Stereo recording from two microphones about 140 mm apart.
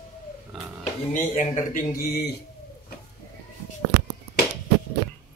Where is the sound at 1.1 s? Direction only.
60° left (ahead or behind).